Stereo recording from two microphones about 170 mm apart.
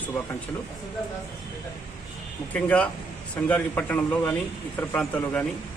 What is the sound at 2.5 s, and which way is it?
Speech, 10° left (ahead or behind).